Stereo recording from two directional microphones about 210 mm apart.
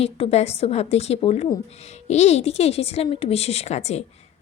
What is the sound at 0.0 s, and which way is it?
A woman's voice, 30° left (ahead or behind).